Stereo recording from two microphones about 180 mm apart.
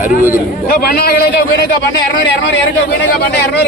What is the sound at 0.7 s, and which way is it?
Speech, 60° left (ahead or behind).